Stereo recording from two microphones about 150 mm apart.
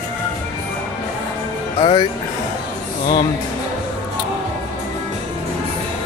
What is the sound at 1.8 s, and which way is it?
Speech, 40° left (ahead or behind).